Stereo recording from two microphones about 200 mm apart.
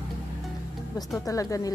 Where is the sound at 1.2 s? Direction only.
15° left (ahead or behind).